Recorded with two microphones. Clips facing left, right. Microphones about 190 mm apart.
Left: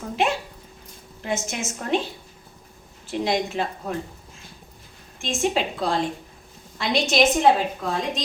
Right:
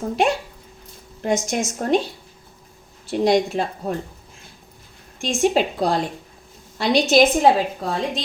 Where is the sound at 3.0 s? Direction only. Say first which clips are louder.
Right 6 dB; 40° right (ahead or behind).